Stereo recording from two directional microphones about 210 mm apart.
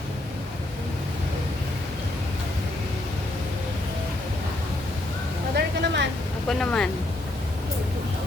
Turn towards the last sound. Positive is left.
turn(degrees=5)  # may be behind; listen again after turning